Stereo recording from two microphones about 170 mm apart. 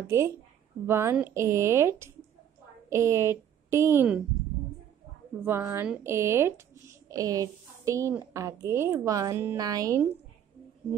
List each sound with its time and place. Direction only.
0.0 s speech: 15° right (ahead or behind)
5.4 s speech: 15° right (ahead or behind)